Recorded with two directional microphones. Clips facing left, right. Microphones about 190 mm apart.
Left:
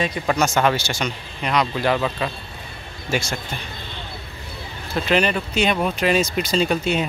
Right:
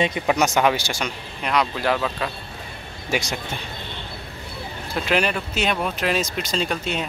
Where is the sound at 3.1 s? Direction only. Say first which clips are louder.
Left 1 dB; 15° right (ahead or behind).